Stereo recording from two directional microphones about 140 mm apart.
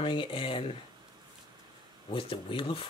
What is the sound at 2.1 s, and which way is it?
Speech, 40° left (ahead or behind).